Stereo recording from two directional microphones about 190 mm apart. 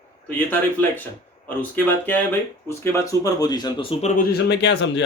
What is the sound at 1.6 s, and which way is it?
Speech, 10° left (ahead or behind).